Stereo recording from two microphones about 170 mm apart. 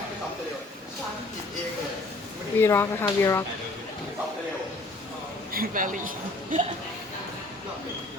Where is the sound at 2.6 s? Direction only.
15° left (ahead or behind).